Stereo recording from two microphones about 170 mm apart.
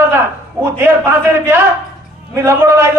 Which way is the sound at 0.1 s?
15° right (ahead or behind).